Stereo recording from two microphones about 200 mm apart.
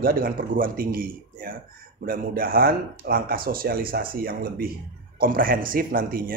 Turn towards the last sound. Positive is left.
turn(degrees=-45)  # may be behind; listen again after turning